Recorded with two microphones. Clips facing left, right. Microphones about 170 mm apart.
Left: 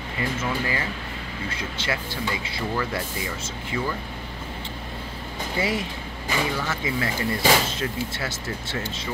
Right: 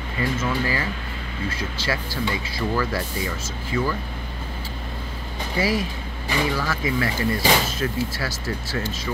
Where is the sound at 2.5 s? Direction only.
25° left (ahead or behind).